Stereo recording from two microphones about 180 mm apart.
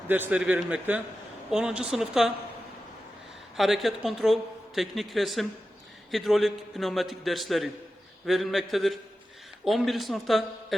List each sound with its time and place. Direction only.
0.1 s a man's voice: 10° right (ahead or behind)
3.6 s a man's voice: centre (ahead or behind)